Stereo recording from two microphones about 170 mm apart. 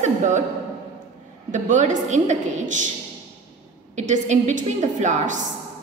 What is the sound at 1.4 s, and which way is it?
A woman's voice, 45° right (ahead or behind).